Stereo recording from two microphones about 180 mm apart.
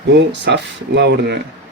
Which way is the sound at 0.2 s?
75° right (ahead or behind).